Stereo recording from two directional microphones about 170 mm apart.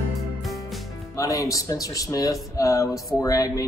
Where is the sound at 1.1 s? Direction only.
20° left (ahead or behind).